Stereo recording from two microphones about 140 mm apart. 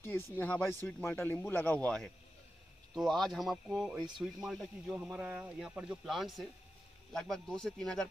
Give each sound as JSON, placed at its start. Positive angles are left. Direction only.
{"t": 0.4, "sound": "speech", "side_deg": 15}